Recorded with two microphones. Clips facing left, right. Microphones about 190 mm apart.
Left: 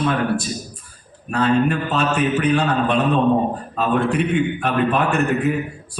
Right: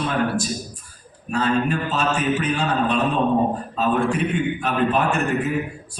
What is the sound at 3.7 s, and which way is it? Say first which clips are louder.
A man's voice: left 5 dB; 60° left (ahead or behind).